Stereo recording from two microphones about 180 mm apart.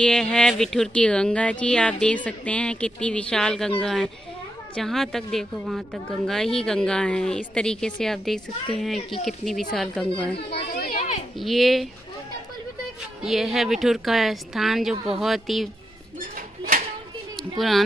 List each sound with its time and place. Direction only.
0.0 s speech: 5° left (ahead or behind)
10.3 s a child's voice: 65° left (ahead or behind)
11.3 s speech: centre (ahead or behind)
13.2 s speech: centre (ahead or behind)
16.3 s a sound: 45° right (ahead or behind)
17.4 s speech: centre (ahead or behind)